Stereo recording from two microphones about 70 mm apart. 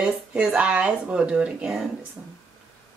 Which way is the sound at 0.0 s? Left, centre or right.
Centre.